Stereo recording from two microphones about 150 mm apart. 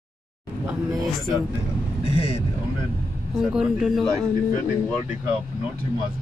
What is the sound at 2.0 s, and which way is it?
Speech, 40° left (ahead or behind).